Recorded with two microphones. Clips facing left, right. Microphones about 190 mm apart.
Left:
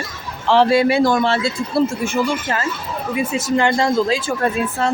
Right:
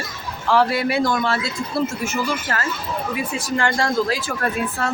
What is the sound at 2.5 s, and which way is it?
A woman's voice, 20° left (ahead or behind).